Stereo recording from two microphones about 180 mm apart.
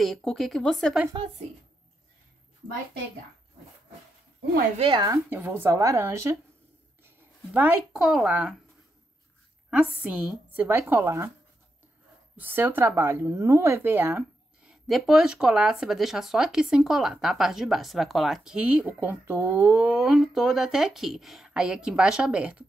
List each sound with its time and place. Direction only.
0.0 s speech: centre (ahead or behind)
4.7 s speech: 30° right (ahead or behind)
5.0 s speech: 15° right (ahead or behind)
10.0 s speech: 5° right (ahead or behind)
12.4 s speech: 10° right (ahead or behind)